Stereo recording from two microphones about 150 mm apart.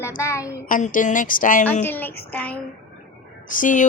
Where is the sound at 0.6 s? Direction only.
65° left (ahead or behind).